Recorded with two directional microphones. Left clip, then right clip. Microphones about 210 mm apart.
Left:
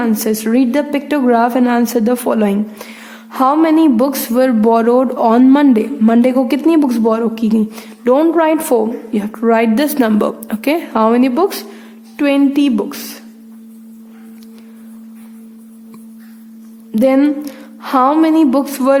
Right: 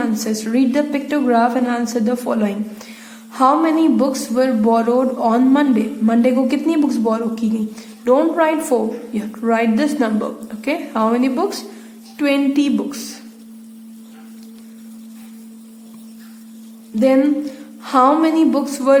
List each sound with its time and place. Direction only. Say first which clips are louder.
0.0 s speech: left 5 dB; 40° left (ahead or behind)
16.9 s speech: left 2 dB; 40° left (ahead or behind)